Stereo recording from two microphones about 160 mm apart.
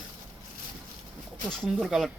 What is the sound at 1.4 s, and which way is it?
Speech, centre (ahead or behind).